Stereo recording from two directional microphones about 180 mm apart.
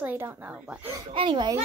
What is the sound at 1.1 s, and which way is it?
Speech, 30° right (ahead or behind).